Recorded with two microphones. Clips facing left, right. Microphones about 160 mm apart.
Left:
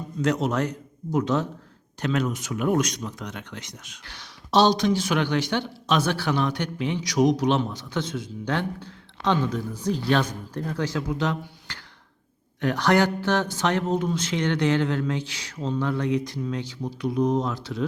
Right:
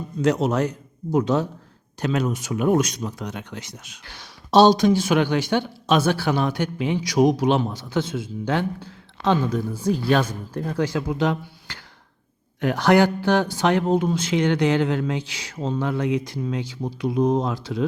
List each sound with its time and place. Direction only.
0.2 s a man's voice: 10° right (ahead or behind)
2.5 s speech: 30° right (ahead or behind)
3.2 s a man's voice: 10° right (ahead or behind)
4.8 s a man's voice: 10° right (ahead or behind)
17.5 s a man's voice: 10° right (ahead or behind)